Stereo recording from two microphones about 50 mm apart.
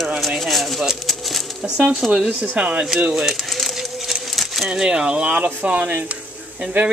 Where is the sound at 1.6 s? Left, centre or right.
Right.